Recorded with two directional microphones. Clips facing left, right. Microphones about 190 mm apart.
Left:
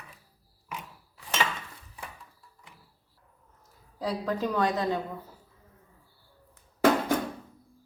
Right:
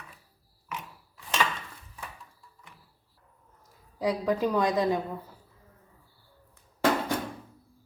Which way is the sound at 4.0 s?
15° right (ahead or behind).